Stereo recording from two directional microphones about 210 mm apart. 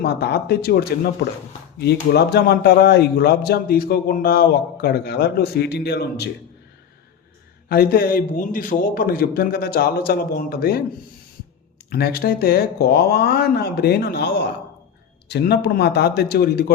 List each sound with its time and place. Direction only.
0.0 s a man's voice: 50° left (ahead or behind)
7.7 s a man's voice: 50° left (ahead or behind)
11.9 s a man's voice: 50° left (ahead or behind)